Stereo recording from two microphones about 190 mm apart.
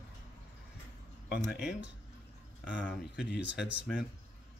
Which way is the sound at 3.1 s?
60° left (ahead or behind).